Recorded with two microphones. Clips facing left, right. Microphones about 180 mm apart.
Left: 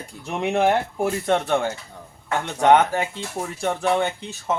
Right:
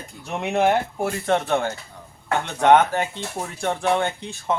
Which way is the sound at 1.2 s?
10° left (ahead or behind).